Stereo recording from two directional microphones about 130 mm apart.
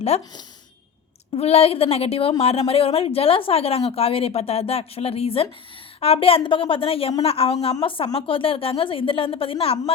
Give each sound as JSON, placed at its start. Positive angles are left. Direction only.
{"t": 0.1, "sound": "speech", "side_deg": 55}
{"t": 1.4, "sound": "a woman's voice", "side_deg": 50}